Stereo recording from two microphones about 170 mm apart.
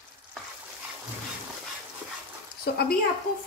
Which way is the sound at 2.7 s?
65° left (ahead or behind).